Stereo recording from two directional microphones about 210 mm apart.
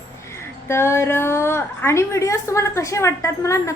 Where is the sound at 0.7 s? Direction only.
10° left (ahead or behind).